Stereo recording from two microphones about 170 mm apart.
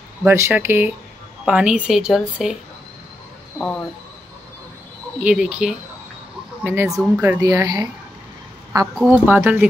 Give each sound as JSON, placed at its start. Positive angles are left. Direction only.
{"t": 0.2, "sound": "a woman's voice", "side_deg": -10}
{"t": 5.2, "sound": "a woman's voice", "side_deg": -5}
{"t": 8.9, "sound": "speech", "side_deg": -5}